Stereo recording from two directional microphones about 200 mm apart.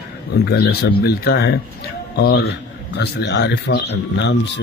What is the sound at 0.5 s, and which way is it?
A man's voice, 55° left (ahead or behind).